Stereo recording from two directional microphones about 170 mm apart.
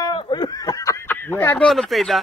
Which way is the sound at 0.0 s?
25° left (ahead or behind).